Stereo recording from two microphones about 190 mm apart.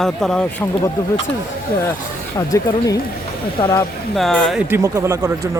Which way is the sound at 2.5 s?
15° left (ahead or behind).